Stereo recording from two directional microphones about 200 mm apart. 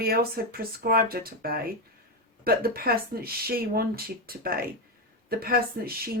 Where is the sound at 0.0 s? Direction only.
50° right (ahead or behind).